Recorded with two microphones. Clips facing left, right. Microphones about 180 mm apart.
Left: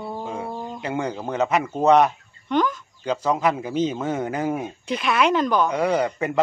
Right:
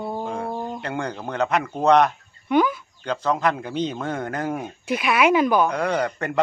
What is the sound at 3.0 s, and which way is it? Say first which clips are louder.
A man's voice: left 1 dB; 10° left (ahead or behind).